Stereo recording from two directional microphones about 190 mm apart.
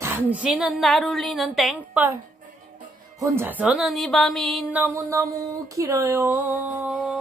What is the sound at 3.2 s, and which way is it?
A woman's voice, 10° right (ahead or behind).